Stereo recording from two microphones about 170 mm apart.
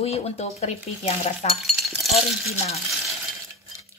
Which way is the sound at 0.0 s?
35° left (ahead or behind).